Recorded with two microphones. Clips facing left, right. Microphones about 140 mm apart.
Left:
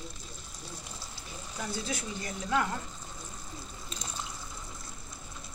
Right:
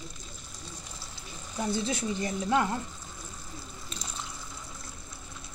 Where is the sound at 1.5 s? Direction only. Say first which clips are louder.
Right 6 dB; 25° right (ahead or behind).